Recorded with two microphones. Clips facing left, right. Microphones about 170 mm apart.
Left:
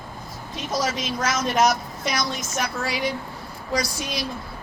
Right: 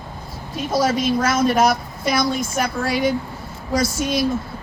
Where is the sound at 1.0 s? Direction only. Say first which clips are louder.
Right 7 dB; 55° right (ahead or behind).